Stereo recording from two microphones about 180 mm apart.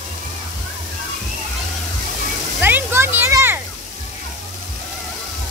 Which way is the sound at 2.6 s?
10° right (ahead or behind).